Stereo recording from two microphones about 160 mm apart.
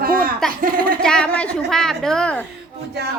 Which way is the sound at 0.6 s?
65° right (ahead or behind).